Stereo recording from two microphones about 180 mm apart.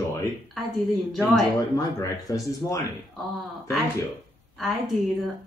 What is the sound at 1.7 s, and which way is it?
Speech, 20° left (ahead or behind).